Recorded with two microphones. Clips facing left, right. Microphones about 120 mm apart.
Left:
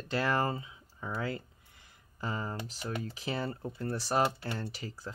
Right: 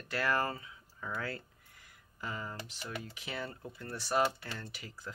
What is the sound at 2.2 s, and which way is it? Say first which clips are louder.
Speech: left 5 dB; 30° left (ahead or behind).